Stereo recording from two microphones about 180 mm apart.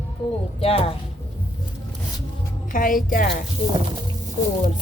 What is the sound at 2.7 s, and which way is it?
Speech, 50° left (ahead or behind).